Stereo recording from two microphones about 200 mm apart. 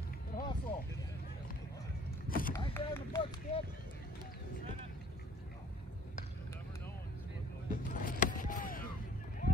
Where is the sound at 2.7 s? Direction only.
10° left (ahead or behind).